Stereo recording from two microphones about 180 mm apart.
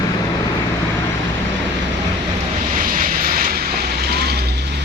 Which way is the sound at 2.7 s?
50° right (ahead or behind).